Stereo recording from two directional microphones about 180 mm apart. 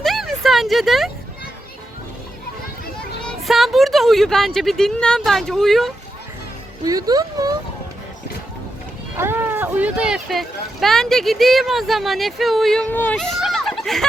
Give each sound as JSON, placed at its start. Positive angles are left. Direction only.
{"t": 0.0, "sound": "a sound", "side_deg": 0}
{"t": 3.2, "sound": "speech", "side_deg": 0}
{"t": 6.8, "sound": "speech", "side_deg": -20}
{"t": 9.1, "sound": "speech", "side_deg": -15}